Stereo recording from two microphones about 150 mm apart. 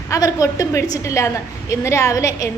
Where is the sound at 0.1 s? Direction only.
25° left (ahead or behind).